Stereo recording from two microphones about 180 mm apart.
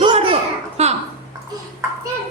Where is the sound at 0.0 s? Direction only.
30° right (ahead or behind).